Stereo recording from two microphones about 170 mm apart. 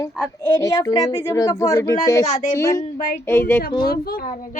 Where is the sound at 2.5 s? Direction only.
15° left (ahead or behind).